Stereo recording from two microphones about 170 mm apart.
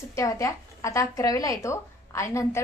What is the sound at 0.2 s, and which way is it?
A woman's voice, 20° left (ahead or behind).